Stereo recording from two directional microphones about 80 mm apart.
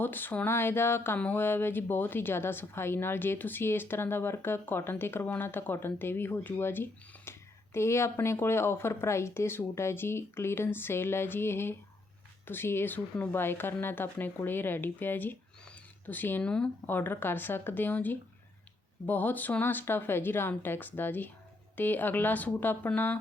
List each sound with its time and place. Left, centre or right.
0.0 s speech: left
15.6 s a sound: centre
16.4 s speech: centre
16.8 s speech: left